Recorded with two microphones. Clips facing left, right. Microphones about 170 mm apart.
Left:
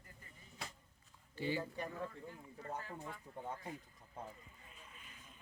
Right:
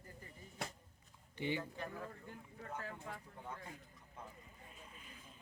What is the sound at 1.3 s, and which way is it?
Speech, 20° right (ahead or behind).